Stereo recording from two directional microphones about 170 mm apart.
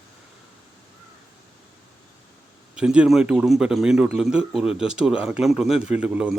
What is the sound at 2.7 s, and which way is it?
A man's voice, 5° right (ahead or behind).